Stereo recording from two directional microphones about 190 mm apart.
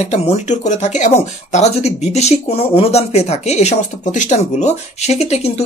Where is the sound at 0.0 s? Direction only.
40° left (ahead or behind).